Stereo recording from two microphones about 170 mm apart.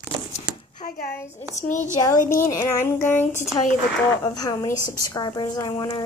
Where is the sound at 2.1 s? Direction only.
55° left (ahead or behind).